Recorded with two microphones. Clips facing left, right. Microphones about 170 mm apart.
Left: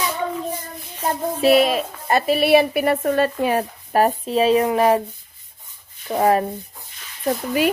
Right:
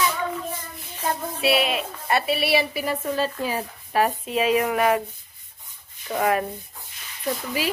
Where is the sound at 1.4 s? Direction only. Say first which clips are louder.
Left 7 dB; 40° left (ahead or behind); by 3.6 s 60° left (ahead or behind).